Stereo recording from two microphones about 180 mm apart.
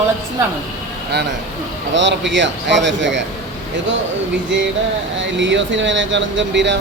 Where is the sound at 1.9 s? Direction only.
80° right.